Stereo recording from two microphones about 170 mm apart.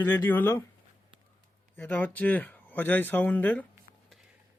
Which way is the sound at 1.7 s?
10° left (ahead or behind).